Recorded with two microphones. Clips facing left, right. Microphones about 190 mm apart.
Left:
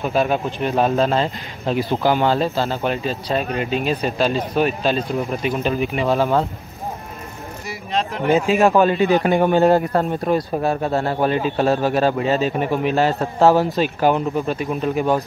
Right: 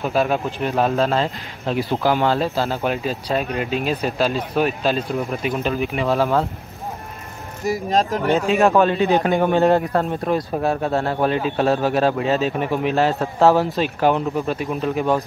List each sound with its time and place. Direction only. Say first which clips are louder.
0.0 s speech: left 1 dB; centre (ahead or behind)
7.6 s speech: right 5 dB; 40° right (ahead or behind)
8.3 s speech: left 3 dB; centre (ahead or behind)